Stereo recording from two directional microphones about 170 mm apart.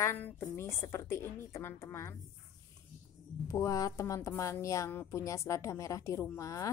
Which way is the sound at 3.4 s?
20° left (ahead or behind).